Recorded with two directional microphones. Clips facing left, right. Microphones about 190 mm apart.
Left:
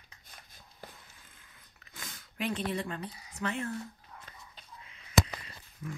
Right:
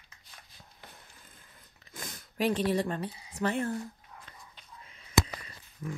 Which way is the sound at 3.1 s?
35° right (ahead or behind).